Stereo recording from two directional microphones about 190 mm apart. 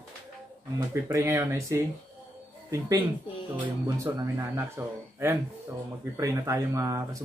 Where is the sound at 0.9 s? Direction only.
15° right (ahead or behind).